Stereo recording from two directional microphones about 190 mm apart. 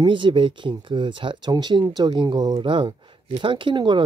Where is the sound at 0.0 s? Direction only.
25° right (ahead or behind).